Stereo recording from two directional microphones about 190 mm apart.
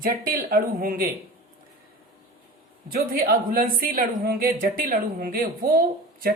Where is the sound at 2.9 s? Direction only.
50° right (ahead or behind).